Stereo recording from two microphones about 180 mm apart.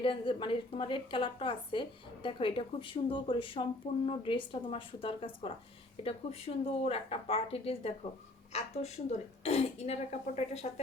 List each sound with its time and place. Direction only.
0.0 s a woman's voice: 30° left (ahead or behind)